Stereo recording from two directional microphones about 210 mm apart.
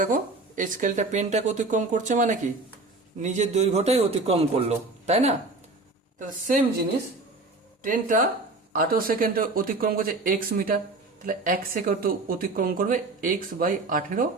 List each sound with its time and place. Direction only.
0.0 s speech: 40° right (ahead or behind)
7.8 s speech: 40° right (ahead or behind)